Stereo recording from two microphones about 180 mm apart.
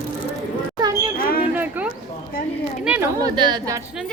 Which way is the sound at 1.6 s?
10° right (ahead or behind).